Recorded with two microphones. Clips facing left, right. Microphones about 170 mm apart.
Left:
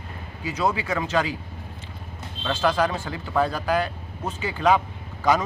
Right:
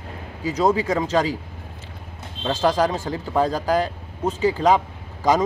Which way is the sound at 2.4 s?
35° right (ahead or behind).